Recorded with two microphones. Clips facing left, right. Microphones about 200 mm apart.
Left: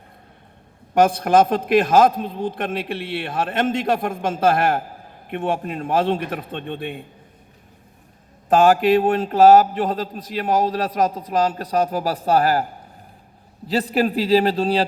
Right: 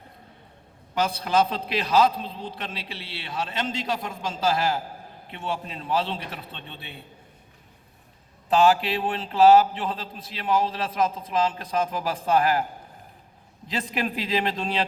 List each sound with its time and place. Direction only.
0.9 s a man's voice: 50° left (ahead or behind)
8.4 s a man's voice: 45° left (ahead or behind)
13.7 s a man's voice: 35° left (ahead or behind)